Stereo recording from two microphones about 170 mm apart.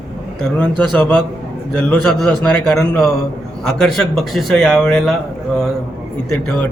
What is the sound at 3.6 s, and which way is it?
Speech, 5° left (ahead or behind).